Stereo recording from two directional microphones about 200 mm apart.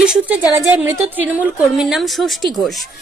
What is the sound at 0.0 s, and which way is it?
A woman's voice, 5° right (ahead or behind).